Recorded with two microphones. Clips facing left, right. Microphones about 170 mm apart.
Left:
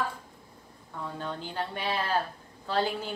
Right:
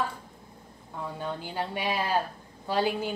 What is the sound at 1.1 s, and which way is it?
A woman's voice, 10° right (ahead or behind).